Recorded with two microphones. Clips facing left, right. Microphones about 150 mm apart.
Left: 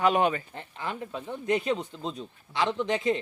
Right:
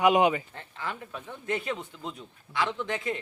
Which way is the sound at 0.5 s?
20° left (ahead or behind).